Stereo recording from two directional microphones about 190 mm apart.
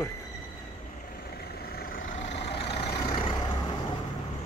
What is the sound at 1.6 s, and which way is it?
Vehicle, 50° left (ahead or behind).